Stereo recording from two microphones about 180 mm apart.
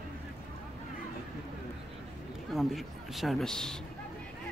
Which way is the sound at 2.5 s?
Centre (ahead or behind).